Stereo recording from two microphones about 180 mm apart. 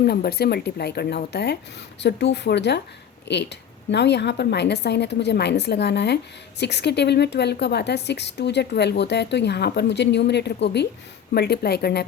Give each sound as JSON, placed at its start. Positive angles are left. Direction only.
{"t": 0.0, "sound": "a woman's voice", "side_deg": 60}